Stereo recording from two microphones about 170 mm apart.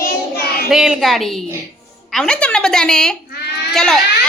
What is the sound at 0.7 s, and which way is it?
A woman's voice, 5° right (ahead or behind).